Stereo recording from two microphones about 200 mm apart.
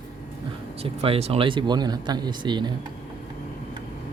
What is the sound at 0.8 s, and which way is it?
Speech, 30° right (ahead or behind).